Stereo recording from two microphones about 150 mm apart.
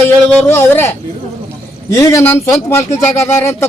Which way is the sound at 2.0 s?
20° left (ahead or behind).